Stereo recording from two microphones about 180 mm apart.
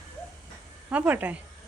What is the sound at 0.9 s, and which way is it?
Speech, 10° right (ahead or behind).